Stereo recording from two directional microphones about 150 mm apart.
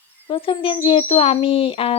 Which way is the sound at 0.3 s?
35° left (ahead or behind).